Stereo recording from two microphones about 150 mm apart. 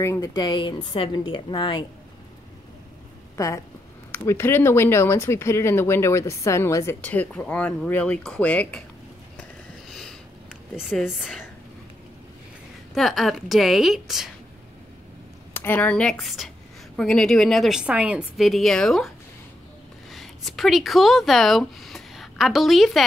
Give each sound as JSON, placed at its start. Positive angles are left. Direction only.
{"t": 0.0, "sound": "speech", "side_deg": 20}
{"t": 3.3, "sound": "speech", "side_deg": 20}
{"t": 9.4, "sound": "sniff", "side_deg": 5}
{"t": 10.8, "sound": "a woman's voice", "side_deg": 0}
{"t": 12.9, "sound": "a woman's voice", "side_deg": 0}
{"t": 15.5, "sound": "a woman's voice", "side_deg": 15}